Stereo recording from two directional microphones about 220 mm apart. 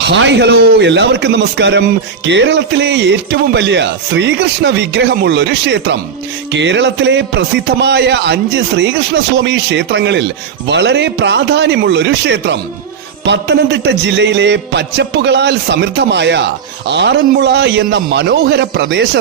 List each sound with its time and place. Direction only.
0.1 s a man's voice: 55° right (ahead or behind)